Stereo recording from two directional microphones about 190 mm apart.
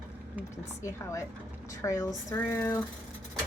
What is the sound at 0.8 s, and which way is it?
Speech, 15° left (ahead or behind).